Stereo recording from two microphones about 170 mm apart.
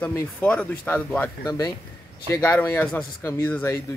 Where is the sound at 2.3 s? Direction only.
15° left (ahead or behind).